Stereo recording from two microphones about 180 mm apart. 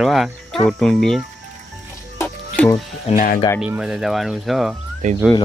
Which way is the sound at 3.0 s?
50° left (ahead or behind).